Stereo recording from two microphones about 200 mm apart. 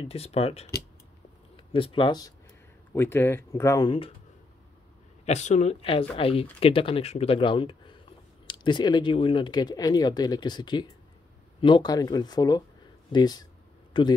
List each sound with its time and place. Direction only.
0.1 s speech: 30° left (ahead or behind)
1.7 s speech: 25° left (ahead or behind)
5.2 s speech: 35° left (ahead or behind)